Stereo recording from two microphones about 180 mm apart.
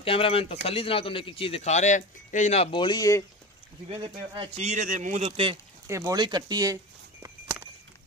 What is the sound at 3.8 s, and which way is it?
Speech, 30° right (ahead or behind).